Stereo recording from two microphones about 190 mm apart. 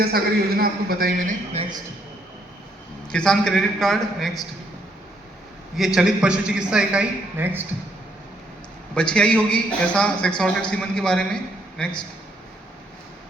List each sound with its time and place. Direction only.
0.0 s a man's voice: 50° right (ahead or behind)
3.1 s a man's voice: 5° left (ahead or behind)
5.7 s a man's voice: centre (ahead or behind)
9.0 s a man's voice: 5° left (ahead or behind)